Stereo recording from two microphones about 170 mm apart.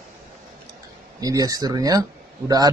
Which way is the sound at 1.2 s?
20° right (ahead or behind).